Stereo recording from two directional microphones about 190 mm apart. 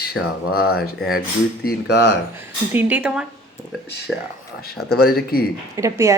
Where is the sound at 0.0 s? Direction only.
55° left (ahead or behind).